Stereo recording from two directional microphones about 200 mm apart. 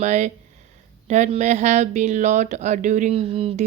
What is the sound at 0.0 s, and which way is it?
Speech, 35° right (ahead or behind).